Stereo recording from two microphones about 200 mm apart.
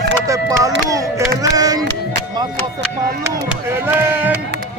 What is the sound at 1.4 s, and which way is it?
Music, 20° right (ahead or behind).